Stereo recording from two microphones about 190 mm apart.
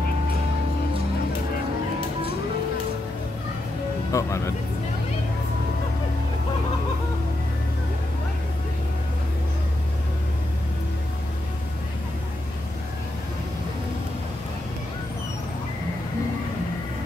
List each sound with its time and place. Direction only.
4.1 s speech: 15° left (ahead or behind)